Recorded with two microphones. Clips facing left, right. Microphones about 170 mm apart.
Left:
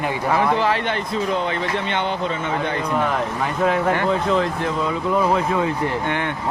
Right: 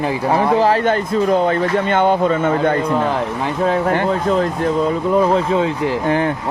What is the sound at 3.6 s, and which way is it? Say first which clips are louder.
A man's voice: right 2 dB; 35° right (ahead or behind).